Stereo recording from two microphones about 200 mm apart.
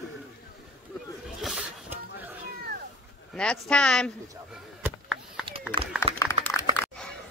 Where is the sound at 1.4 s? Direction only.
5° right (ahead or behind).